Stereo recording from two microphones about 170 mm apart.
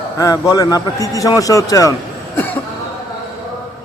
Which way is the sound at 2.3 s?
10° left (ahead or behind).